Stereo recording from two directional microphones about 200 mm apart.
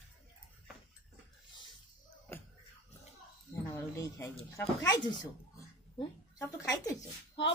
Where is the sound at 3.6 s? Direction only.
15° left (ahead or behind).